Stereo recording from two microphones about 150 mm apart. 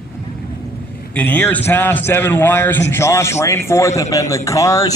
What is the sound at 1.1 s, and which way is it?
A man's voice, 10° left (ahead or behind).